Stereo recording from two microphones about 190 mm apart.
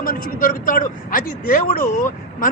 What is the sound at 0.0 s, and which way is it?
Speech, 45° left (ahead or behind).